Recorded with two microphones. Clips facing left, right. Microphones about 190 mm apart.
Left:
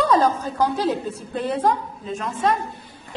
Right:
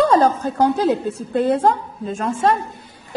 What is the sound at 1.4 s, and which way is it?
A woman's voice, 45° right (ahead or behind).